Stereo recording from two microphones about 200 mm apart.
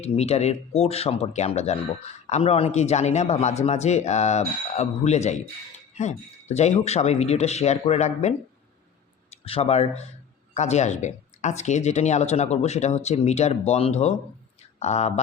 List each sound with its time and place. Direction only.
0.0 s speech: 30° left (ahead or behind)
9.4 s speech: 30° left (ahead or behind)